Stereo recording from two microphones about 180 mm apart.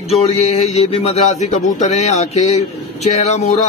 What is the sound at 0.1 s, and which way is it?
A man's voice, 35° left (ahead or behind).